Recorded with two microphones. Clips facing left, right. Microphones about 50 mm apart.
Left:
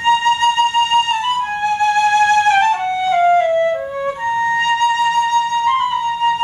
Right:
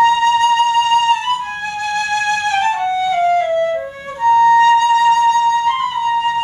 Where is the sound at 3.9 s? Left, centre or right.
Centre.